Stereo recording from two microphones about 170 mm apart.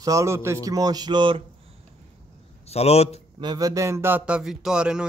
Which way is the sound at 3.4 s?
20° right (ahead or behind).